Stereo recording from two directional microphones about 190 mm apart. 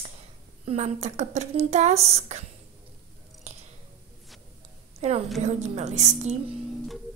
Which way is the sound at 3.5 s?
35° right (ahead or behind).